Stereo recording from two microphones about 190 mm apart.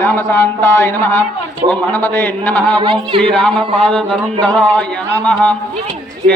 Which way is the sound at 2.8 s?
30° right (ahead or behind).